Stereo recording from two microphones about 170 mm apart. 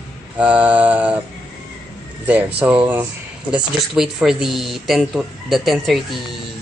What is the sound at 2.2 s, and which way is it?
Speech, 10° right (ahead or behind).